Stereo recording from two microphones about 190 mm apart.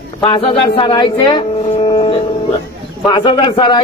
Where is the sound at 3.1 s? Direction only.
25° left (ahead or behind).